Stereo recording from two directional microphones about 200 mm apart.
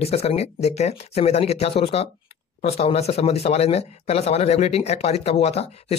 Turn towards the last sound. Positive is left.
turn(degrees=30)  # may be behind; listen again after turning